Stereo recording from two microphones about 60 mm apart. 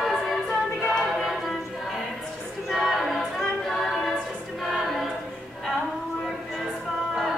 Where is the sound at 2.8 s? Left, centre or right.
Centre.